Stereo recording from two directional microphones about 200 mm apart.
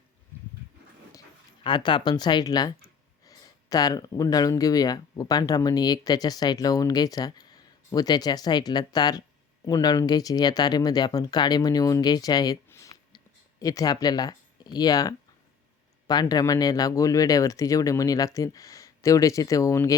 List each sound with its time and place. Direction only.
1.6 s speech: 25° left (ahead or behind)